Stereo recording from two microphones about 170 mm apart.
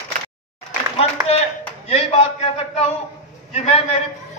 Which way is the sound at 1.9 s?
35° left (ahead or behind).